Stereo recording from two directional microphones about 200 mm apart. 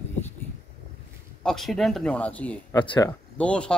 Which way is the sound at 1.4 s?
Centre (ahead or behind).